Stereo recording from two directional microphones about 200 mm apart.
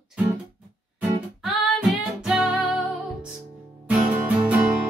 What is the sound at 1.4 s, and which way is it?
Music, centre (ahead or behind).